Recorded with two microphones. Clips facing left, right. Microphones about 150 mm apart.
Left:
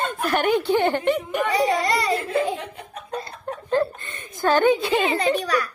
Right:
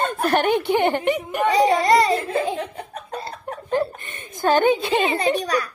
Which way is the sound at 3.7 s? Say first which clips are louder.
Left 1 dB; 20° right (ahead or behind).